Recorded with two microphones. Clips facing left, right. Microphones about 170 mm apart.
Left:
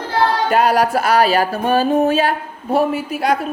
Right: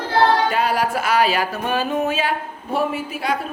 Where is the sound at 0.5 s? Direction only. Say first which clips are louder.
Left 6 dB; 40° left (ahead or behind).